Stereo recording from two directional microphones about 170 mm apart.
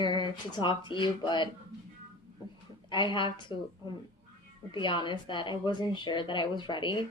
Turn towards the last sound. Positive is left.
turn(degrees=30)  # may be behind; listen again after turning